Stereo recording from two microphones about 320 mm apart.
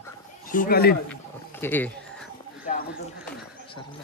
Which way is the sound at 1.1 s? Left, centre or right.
Centre.